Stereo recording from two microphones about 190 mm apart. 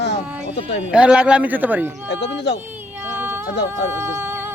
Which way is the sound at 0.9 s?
5° right (ahead or behind).